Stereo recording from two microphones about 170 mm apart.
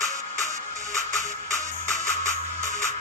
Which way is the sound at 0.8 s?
20° right (ahead or behind).